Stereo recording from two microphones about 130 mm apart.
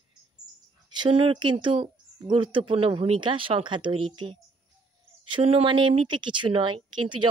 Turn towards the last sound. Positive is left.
turn(degrees=-40)  # may be behind; listen again after turning